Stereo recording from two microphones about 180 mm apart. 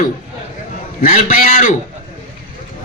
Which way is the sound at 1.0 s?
50° left (ahead or behind).